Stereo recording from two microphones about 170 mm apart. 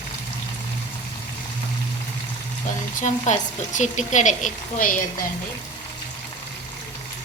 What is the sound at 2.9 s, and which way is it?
Speech, 45° left (ahead or behind).